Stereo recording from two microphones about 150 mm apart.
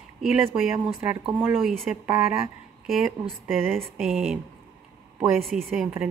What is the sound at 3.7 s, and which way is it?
A woman's voice, centre (ahead or behind).